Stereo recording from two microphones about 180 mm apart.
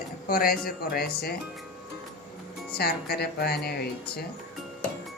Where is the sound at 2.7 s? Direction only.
60° left (ahead or behind).